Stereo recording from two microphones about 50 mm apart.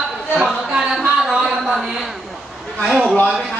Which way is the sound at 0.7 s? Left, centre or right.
Centre.